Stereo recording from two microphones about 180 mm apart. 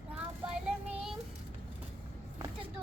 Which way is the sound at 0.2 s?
5° right (ahead or behind).